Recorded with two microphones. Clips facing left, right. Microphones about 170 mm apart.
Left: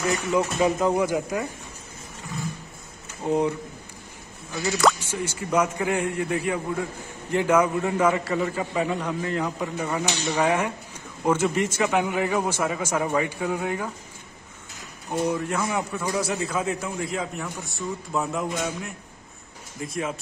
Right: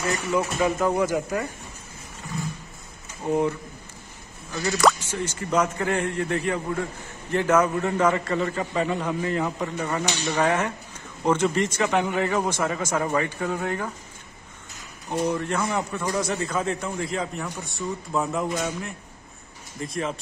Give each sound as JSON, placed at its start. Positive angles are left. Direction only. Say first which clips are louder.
{"t": 0.1, "sound": "speech", "louder": "even", "side_deg": 20}
{"t": 3.3, "sound": "speech", "louder": "even", "side_deg": 20}
{"t": 4.6, "sound": "speech", "louder": "right 1 dB", "side_deg": 10}
{"t": 15.0, "sound": "a man's voice", "louder": "even", "side_deg": 5}